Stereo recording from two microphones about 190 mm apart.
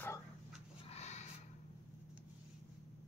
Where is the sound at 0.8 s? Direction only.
35° left (ahead or behind).